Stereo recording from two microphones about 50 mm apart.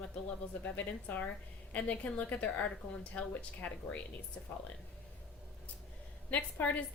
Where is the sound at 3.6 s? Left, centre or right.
Left.